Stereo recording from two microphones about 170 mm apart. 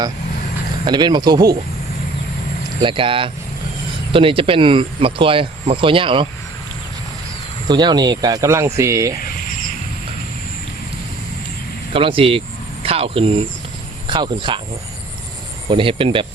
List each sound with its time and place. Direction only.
0.9 s speech: 25° right (ahead or behind)
2.8 s speech: 30° right (ahead or behind)
7.7 s speech: 25° right (ahead or behind)
11.9 s speech: 30° right (ahead or behind)
15.7 s speech: 30° right (ahead or behind)